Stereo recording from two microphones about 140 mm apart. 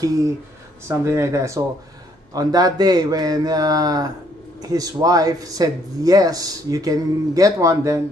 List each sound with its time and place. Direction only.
0.8 s speech: 20° right (ahead or behind)